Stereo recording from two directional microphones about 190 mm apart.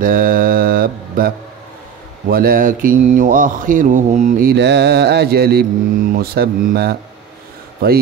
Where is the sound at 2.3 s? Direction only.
50° right (ahead or behind).